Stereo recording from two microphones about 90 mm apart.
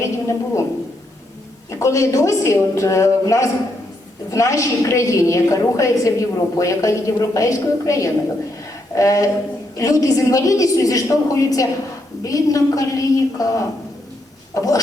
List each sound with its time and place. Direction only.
0.0 s a sound: 35° left (ahead or behind)
1.8 s a woman's voice: 35° left (ahead or behind)
14.5 s chicken: 40° left (ahead or behind)